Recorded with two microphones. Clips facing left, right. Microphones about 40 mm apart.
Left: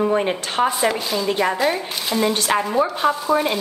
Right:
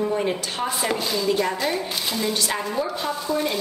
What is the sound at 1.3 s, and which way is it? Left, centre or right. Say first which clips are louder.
Speech: left 2 dB; left.